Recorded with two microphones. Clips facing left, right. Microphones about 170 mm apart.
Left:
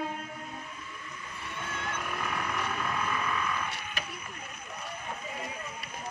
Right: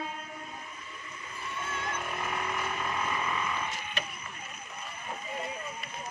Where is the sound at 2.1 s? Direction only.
10° right (ahead or behind).